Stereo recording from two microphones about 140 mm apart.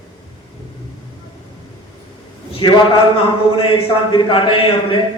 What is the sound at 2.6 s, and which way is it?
A man's voice, 35° left (ahead or behind).